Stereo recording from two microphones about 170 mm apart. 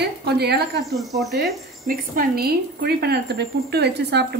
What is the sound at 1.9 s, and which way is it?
Speech, 60° right (ahead or behind).